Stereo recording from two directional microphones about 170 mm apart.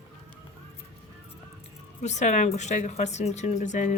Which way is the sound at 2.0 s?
45° left (ahead or behind).